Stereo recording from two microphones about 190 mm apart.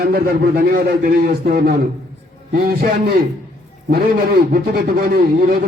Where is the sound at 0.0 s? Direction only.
50° right (ahead or behind).